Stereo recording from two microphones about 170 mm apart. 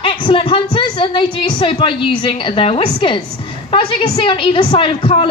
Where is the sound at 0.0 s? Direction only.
30° left (ahead or behind).